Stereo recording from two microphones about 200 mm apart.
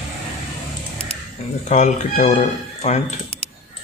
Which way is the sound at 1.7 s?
35° left (ahead or behind).